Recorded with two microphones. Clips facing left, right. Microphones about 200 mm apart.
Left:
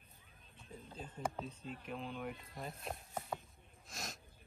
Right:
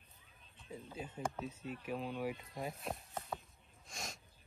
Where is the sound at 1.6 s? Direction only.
50° right (ahead or behind).